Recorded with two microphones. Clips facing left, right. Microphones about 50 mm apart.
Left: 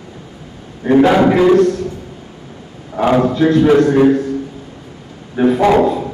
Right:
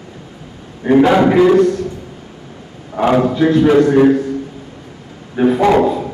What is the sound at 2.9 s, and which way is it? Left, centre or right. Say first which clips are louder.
A man's voice: even; centre.